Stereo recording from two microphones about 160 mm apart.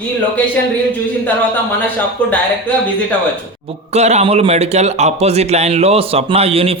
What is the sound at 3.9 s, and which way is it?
Speech, 45° right (ahead or behind).